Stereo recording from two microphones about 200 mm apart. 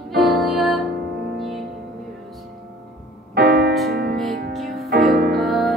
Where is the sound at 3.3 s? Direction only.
50° right (ahead or behind).